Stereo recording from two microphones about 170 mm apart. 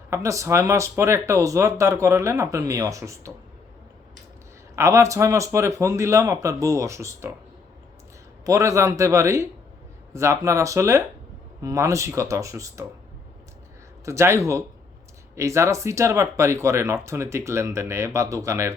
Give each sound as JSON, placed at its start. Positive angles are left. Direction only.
{"t": 0.1, "sound": "speech", "side_deg": -20}
{"t": 4.7, "sound": "speech", "side_deg": -15}
{"t": 8.4, "sound": "speech", "side_deg": -20}
{"t": 14.0, "sound": "speech", "side_deg": -15}